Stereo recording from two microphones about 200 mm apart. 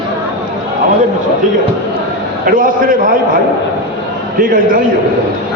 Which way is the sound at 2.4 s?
45° right (ahead or behind).